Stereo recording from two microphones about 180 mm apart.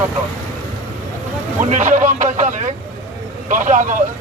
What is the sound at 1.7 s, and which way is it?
Speech, 45° right (ahead or behind).